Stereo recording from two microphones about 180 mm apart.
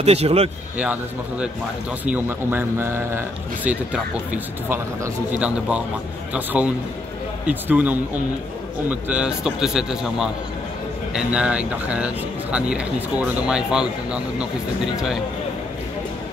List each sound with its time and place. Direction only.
0.0 s speech: 35° right (ahead or behind)
2.0 s a man's voice: 10° right (ahead or behind)